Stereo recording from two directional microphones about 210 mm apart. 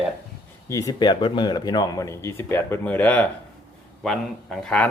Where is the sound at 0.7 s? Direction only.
15° left (ahead or behind).